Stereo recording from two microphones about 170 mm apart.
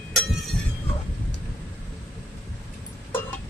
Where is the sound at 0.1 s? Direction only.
Centre (ahead or behind).